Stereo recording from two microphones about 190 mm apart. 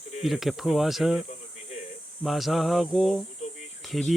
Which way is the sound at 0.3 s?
Centre (ahead or behind).